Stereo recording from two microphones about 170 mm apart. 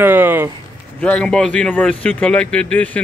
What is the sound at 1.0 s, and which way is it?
Speech, 5° left (ahead or behind).